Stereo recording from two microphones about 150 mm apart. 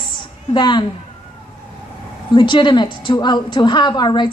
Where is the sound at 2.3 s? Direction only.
30° left (ahead or behind).